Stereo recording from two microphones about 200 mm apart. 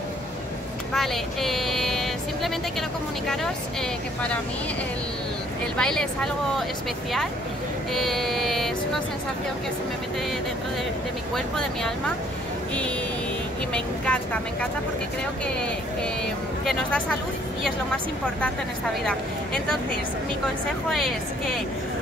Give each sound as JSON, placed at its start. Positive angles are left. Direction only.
{"t": 0.9, "sound": "music", "side_deg": 0}
{"t": 5.8, "sound": "speech", "side_deg": 5}
{"t": 7.9, "sound": "child singing", "side_deg": 0}
{"t": 11.3, "sound": "speech", "side_deg": 0}
{"t": 13.7, "sound": "speech", "side_deg": 5}
{"t": 16.6, "sound": "speech", "side_deg": 5}
{"t": 20.9, "sound": "speech", "side_deg": 0}